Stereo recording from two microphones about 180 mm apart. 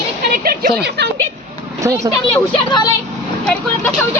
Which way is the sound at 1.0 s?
70° right (ahead or behind).